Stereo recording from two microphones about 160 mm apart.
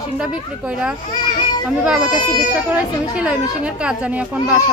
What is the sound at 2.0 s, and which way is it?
Speech, 25° left (ahead or behind).